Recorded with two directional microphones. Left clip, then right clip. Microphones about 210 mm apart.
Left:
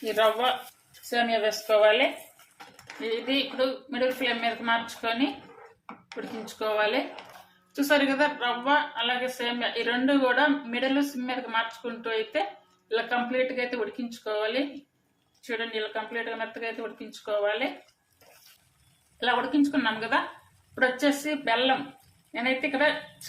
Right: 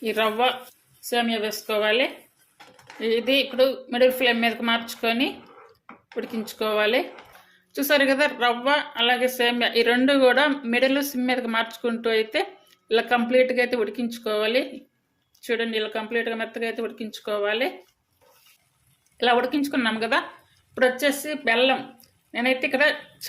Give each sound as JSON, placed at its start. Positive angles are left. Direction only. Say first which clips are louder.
{"t": 0.0, "sound": "a woman's voice", "louder": "right 2 dB", "side_deg": -45}
{"t": 19.2, "sound": "a woman's voice", "louder": "right 4 dB", "side_deg": -45}